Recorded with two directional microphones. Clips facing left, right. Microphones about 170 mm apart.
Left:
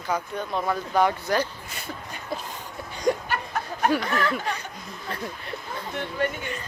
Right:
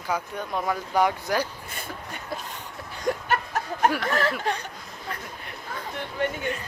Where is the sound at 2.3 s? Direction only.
Centre (ahead or behind).